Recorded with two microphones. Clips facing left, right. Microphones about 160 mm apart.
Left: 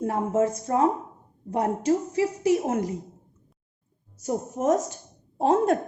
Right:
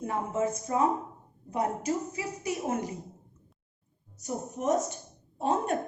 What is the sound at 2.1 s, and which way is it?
Speech, 85° left.